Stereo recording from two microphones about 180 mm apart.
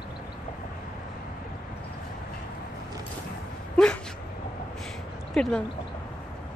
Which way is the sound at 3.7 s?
5° left (ahead or behind).